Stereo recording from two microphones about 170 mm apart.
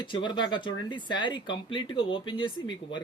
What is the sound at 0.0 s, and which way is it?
Speech, 25° left (ahead or behind).